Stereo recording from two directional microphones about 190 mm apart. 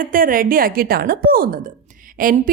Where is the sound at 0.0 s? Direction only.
45° right (ahead or behind).